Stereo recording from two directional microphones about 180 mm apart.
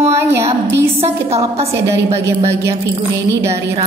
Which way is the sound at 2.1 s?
15° right (ahead or behind).